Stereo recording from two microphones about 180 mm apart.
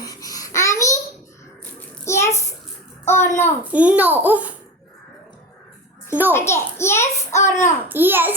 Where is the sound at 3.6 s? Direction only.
10° right (ahead or behind).